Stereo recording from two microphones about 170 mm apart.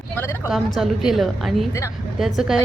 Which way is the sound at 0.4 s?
Centre (ahead or behind).